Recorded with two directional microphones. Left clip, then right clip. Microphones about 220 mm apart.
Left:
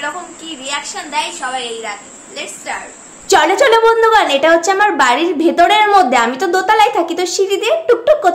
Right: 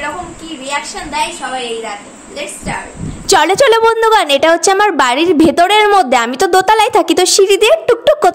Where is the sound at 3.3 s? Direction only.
45° right (ahead or behind).